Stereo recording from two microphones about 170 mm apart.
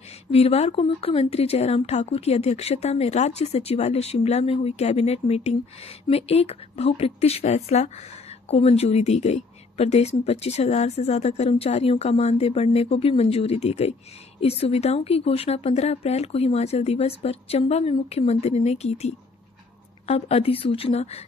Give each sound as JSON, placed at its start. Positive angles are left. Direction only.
{"t": 0.3, "sound": "speech", "side_deg": 35}